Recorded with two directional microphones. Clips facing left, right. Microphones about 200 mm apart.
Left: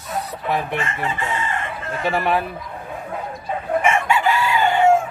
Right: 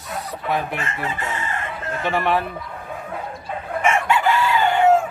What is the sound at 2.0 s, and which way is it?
Speech, centre (ahead or behind).